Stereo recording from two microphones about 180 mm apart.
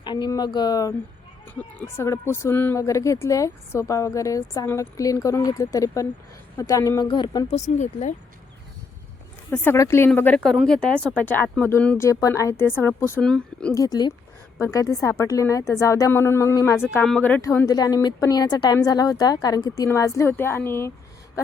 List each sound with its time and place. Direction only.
0.0 s speech: 25° left (ahead or behind)
2.0 s a woman's voice: 15° left (ahead or behind)
7.5 s speech: 40° left (ahead or behind)
9.5 s a woman's voice: 15° left (ahead or behind)
13.7 s a woman's voice: 20° left (ahead or behind)